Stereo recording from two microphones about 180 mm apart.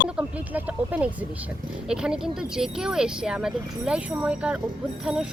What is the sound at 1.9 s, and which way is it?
Speech, 5° right (ahead or behind).